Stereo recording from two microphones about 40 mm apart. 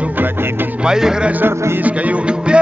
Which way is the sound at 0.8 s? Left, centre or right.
Centre.